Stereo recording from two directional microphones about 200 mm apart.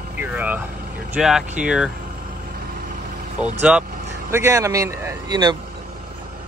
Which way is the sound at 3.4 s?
5° right (ahead or behind).